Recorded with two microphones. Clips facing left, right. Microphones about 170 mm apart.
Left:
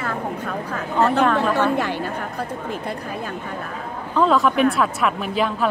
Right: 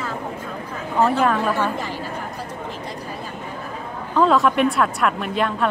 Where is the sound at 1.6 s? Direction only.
70° left (ahead or behind).